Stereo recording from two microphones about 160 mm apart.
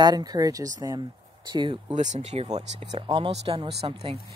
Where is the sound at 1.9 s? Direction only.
45° right (ahead or behind).